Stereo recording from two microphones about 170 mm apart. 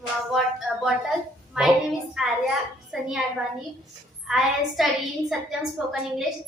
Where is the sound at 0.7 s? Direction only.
Centre (ahead or behind).